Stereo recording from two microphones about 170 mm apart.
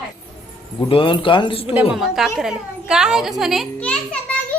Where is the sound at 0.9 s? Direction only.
30° left (ahead or behind).